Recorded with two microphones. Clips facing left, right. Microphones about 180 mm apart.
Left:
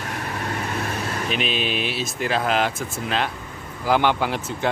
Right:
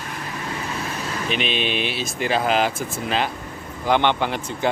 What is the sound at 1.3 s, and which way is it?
Speech, centre (ahead or behind).